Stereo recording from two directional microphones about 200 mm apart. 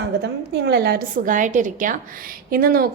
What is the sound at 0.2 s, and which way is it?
A woman's voice, 55° right (ahead or behind).